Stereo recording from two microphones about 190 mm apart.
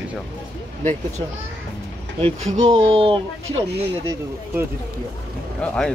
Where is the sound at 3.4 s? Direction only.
90° right.